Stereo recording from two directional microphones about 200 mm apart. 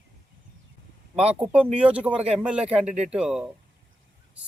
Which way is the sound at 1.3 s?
5° right (ahead or behind).